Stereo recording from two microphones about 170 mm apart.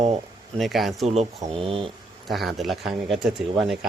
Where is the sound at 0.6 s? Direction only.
Centre (ahead or behind).